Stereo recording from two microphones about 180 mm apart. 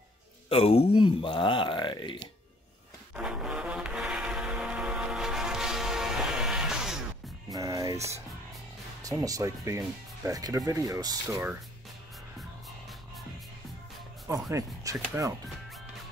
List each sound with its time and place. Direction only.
0.5 s speech: 35° left (ahead or behind)
3.2 s music: 5° right (ahead or behind)
7.5 s music: 20° right (ahead or behind)
9.0 s speech: 20° right (ahead or behind)
14.5 s speech: 15° right (ahead or behind)